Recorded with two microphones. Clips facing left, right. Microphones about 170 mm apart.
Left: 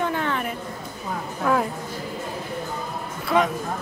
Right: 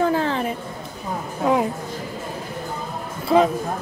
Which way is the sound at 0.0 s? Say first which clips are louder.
Right 5 dB; 35° right (ahead or behind).